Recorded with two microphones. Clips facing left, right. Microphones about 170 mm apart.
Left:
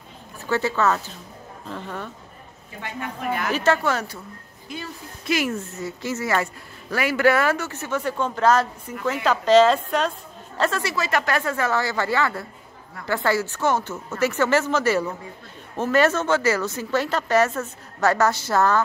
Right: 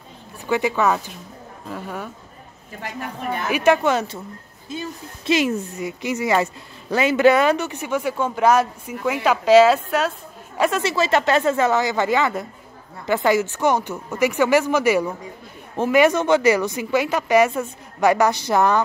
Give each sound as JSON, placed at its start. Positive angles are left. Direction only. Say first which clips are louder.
{"t": 0.5, "sound": "speech", "louder": "right 2 dB", "side_deg": -15}
{"t": 3.4, "sound": "speech", "louder": "right 5 dB", "side_deg": -15}
{"t": 10.6, "sound": "speech", "louder": "right 4 dB", "side_deg": -20}